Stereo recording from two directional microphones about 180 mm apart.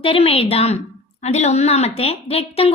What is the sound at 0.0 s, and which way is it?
A woman's voice, 30° left (ahead or behind).